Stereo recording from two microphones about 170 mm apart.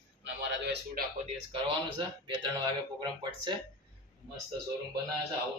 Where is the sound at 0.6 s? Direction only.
75° right (ahead or behind).